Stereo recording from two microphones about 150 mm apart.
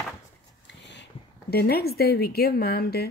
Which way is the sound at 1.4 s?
90° left.